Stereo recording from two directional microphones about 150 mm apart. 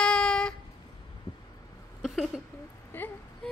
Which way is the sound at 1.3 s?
30° left (ahead or behind).